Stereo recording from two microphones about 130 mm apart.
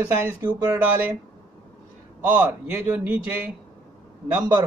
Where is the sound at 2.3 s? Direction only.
15° right (ahead or behind).